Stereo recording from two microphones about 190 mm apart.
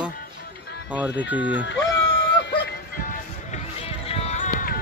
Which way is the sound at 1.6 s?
70° left (ahead or behind).